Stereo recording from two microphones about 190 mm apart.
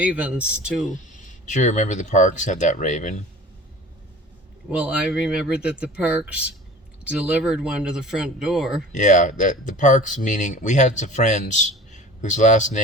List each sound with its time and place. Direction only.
0.0 s speech: 5° right (ahead or behind)
1.5 s speech: 40° left (ahead or behind)
4.8 s speech: 5° right (ahead or behind)
8.9 s speech: 40° left (ahead or behind)